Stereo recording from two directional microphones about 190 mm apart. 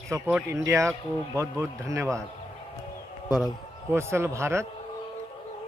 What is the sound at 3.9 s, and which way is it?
Speech, 15° right (ahead or behind).